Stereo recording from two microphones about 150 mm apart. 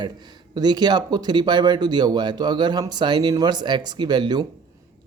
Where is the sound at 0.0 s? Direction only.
30° right (ahead or behind).